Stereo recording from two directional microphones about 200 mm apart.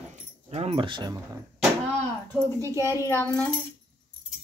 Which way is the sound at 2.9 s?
10° left (ahead or behind).